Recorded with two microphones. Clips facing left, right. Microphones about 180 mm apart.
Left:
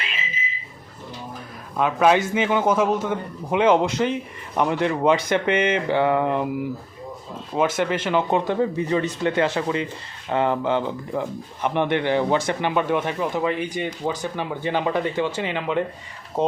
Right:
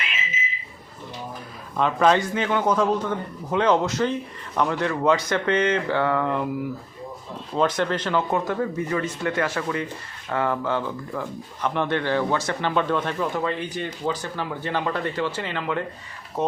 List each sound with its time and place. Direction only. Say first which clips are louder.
1.7 s a man's voice: left 1 dB; 10° left (ahead or behind)
7.5 s a man's voice: left 1 dB; 10° left (ahead or behind)